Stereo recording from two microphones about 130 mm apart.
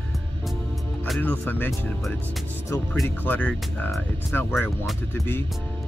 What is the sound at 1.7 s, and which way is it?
Speech, centre (ahead or behind).